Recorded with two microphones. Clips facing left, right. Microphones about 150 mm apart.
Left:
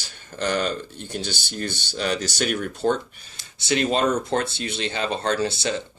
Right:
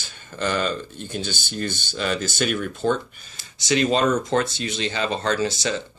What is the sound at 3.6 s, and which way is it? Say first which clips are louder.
Speech: right 2 dB; 55° left (ahead or behind).